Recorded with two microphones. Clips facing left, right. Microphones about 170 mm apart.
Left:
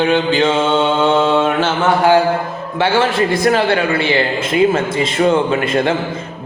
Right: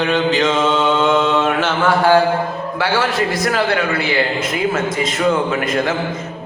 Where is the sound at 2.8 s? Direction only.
25° left (ahead or behind).